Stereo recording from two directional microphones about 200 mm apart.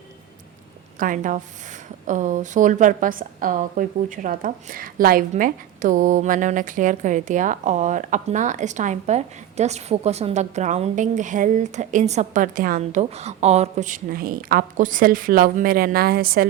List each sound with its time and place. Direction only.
0.9 s a woman's voice: 40° right (ahead or behind)